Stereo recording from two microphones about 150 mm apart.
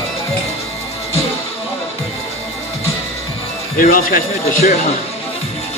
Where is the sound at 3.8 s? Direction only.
65° left (ahead or behind).